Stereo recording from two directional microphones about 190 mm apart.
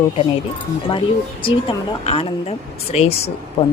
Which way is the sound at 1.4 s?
30° left (ahead or behind).